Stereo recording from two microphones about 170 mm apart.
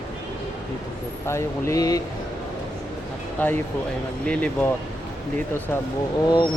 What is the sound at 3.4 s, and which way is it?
Speech, 10° left (ahead or behind).